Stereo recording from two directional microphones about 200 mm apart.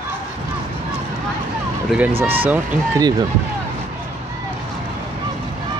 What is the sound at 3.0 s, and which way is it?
Speech, 20° right (ahead or behind).